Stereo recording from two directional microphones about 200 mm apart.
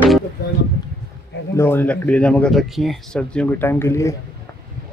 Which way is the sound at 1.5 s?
10° left (ahead or behind).